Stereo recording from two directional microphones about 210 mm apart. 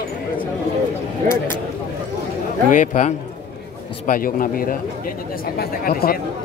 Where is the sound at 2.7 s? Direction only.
35° left (ahead or behind).